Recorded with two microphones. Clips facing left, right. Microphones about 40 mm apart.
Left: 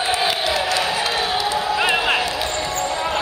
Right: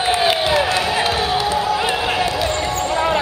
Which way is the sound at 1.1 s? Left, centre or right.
Centre.